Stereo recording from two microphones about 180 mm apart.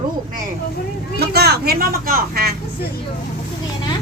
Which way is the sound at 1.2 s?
60° right (ahead or behind).